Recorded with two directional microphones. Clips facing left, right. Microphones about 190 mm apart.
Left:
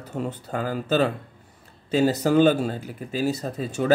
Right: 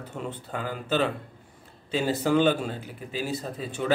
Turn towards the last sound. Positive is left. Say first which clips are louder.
# left 5 dB
turn(degrees=40)  # may be behind; listen again after turning